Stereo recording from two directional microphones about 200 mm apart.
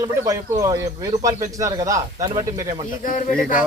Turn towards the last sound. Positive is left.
turn(degrees=40)  # may be behind; listen again after turning